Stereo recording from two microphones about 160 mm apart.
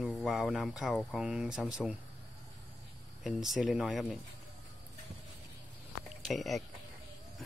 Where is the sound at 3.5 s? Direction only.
Centre (ahead or behind).